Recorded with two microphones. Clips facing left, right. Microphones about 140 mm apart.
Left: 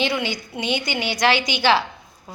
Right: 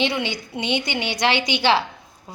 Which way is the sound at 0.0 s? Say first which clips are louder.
Even; 25° right (ahead or behind).